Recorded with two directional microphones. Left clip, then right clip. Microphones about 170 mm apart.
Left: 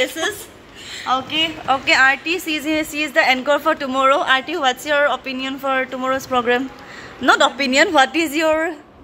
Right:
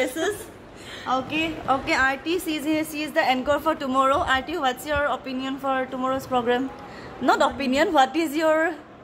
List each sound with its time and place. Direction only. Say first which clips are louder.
0.0 s a woman's voice: left 4 dB; 10° left (ahead or behind)
1.9 s a woman's voice: left 11 dB; 20° left (ahead or behind)